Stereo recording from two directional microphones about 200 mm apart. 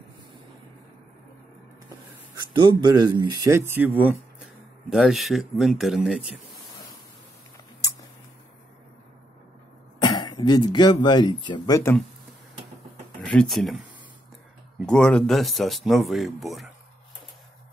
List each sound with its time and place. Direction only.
2.5 s speech: 20° right (ahead or behind); by 6.4 s centre (ahead or behind)
10.0 s speech: 20° left (ahead or behind)
13.2 s speech: centre (ahead or behind)
14.9 s speech: 5° left (ahead or behind)